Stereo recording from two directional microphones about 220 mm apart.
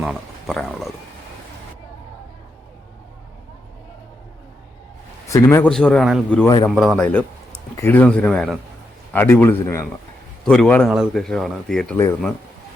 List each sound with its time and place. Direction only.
0.0 s speech: centre (ahead or behind)
5.3 s speech: 15° left (ahead or behind)
6.4 s a man's voice: 15° left (ahead or behind)
6.7 s a man's voice: centre (ahead or behind)